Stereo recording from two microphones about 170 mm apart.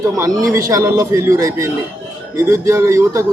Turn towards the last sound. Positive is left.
turn(degrees=-15)  # may be behind; listen again after turning